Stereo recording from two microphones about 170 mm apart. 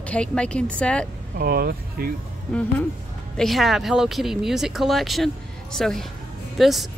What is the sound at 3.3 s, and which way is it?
Speech, centre (ahead or behind).